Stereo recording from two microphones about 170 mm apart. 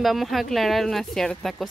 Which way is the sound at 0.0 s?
Centre (ahead or behind).